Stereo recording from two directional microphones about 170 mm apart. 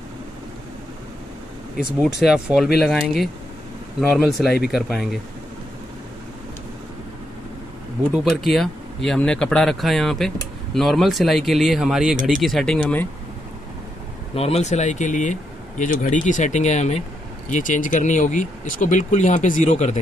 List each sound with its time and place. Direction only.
2.2 s speech: 5° right (ahead or behind)
8.2 s speech: centre (ahead or behind)
14.3 s speech: 35° left (ahead or behind)